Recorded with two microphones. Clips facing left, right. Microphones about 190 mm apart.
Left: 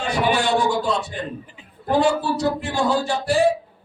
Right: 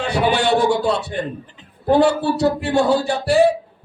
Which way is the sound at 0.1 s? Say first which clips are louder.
Right 2 dB; 65° right (ahead or behind).